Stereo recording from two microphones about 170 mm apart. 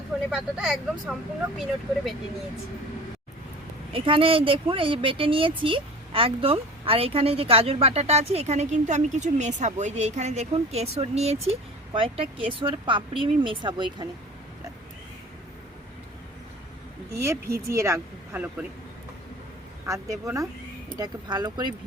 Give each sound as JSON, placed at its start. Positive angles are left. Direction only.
{"t": 0.3, "sound": "speech", "side_deg": -5}
{"t": 3.9, "sound": "speech", "side_deg": -30}
{"t": 17.2, "sound": "speech", "side_deg": -15}
{"t": 19.8, "sound": "speech", "side_deg": -20}